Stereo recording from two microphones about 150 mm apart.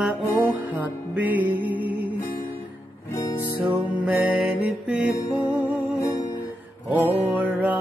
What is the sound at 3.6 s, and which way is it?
Music, 10° right (ahead or behind).